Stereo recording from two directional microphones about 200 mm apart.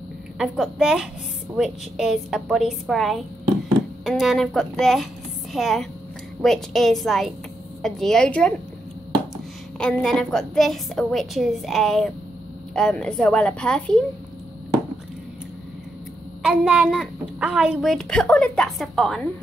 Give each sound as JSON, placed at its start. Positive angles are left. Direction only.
{"t": 0.4, "sound": "a woman's voice", "side_deg": 0}
{"t": 9.8, "sound": "a woman's voice", "side_deg": 5}
{"t": 16.4, "sound": "a woman's voice", "side_deg": -5}